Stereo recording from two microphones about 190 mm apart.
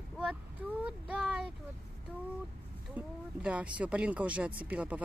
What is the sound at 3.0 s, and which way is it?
Speech, 5° right (ahead or behind).